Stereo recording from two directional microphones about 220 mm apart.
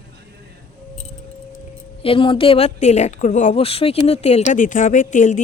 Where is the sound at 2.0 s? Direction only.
25° left (ahead or behind).